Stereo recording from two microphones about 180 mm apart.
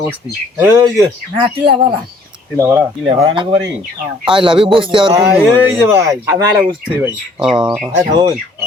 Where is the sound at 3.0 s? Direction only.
30° right (ahead or behind).